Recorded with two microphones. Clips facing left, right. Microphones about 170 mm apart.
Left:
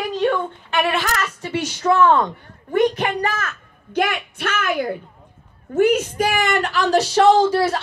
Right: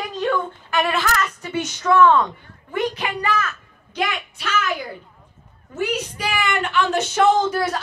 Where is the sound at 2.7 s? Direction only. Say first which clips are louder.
Left 6 dB; 45° left (ahead or behind).